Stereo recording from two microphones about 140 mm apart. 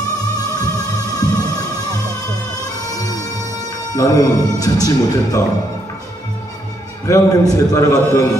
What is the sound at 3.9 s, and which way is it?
Speech, 25° left (ahead or behind).